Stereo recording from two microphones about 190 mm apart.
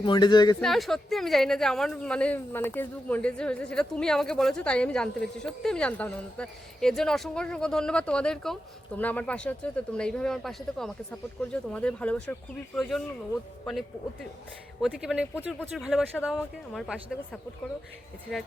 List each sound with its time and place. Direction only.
0.0 s speech: 25° left (ahead or behind)
0.6 s speech: centre (ahead or behind)